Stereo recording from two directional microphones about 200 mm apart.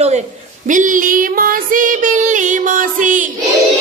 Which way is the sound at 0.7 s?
40° right (ahead or behind).